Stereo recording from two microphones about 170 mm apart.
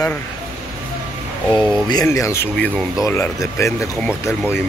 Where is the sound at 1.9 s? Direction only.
20° left (ahead or behind).